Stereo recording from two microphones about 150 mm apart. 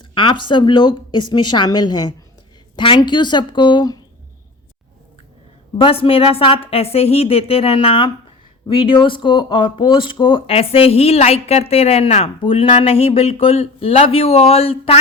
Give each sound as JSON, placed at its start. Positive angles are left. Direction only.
{"t": 0.0, "sound": "speech", "side_deg": 35}
{"t": 5.7, "sound": "speech", "side_deg": 35}